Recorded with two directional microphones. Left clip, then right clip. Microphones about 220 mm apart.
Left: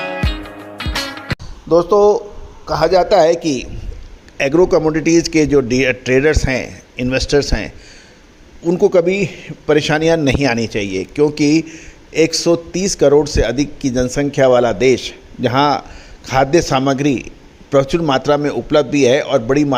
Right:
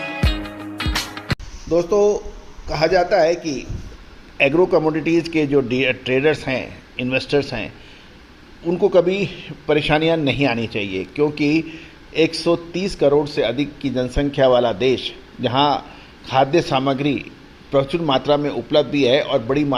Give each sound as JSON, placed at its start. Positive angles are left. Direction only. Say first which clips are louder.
{"t": 0.0, "sound": "music", "louder": "left 3 dB", "side_deg": 0}
{"t": 1.7, "sound": "a man's voice", "louder": "left 6 dB", "side_deg": 25}